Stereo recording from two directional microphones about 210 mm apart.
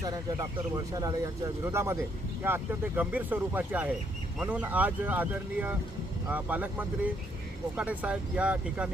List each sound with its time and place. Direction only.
0.0 s speech: 15° right (ahead or behind)